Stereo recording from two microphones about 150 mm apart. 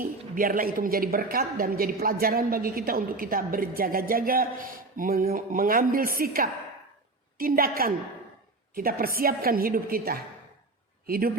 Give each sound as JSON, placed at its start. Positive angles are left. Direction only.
{"t": 0.0, "sound": "a woman's voice", "side_deg": -65}